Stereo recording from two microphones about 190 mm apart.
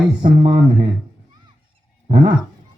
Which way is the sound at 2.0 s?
35° right (ahead or behind).